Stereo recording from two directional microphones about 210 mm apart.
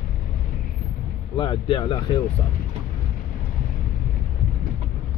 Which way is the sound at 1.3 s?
25° left (ahead or behind).